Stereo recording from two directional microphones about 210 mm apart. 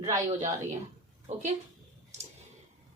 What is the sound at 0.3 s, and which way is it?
A woman's voice, 35° right (ahead or behind).